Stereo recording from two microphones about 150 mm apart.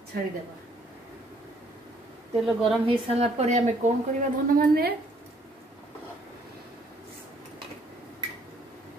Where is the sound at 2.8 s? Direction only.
45° right (ahead or behind).